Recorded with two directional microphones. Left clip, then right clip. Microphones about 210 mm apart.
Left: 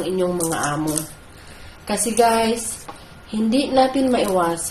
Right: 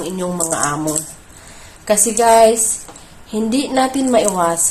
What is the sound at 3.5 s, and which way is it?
A woman's voice, 30° right (ahead or behind).